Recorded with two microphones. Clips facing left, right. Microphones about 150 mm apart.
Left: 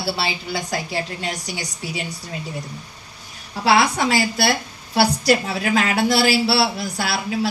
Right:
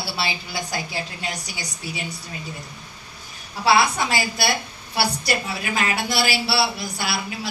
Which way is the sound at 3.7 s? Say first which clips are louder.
Left 2 dB; 75° left (ahead or behind).